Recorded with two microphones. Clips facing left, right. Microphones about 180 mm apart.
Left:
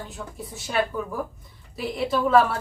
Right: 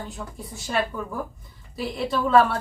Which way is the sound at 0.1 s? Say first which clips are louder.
Even; centre (ahead or behind).